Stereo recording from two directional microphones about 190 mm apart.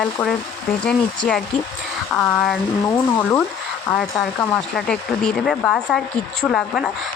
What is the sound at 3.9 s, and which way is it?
Speech, 5° left (ahead or behind).